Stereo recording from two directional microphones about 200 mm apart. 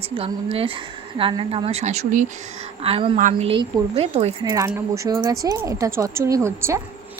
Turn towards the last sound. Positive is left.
turn(degrees=-15)  # may be behind; listen again after turning